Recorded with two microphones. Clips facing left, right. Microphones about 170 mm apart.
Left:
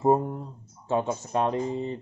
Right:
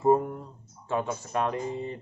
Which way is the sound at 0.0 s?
25° left (ahead or behind).